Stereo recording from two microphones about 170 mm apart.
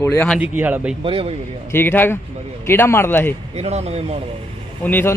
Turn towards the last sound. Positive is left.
turn(degrees=10)  # may be behind; listen again after turning